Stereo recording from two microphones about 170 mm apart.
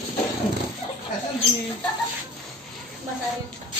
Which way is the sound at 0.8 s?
35° left (ahead or behind).